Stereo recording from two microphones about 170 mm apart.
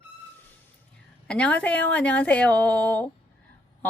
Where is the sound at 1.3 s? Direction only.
5° left (ahead or behind).